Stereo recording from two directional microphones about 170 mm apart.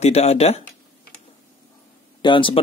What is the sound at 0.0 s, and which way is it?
Speech, 40° left (ahead or behind).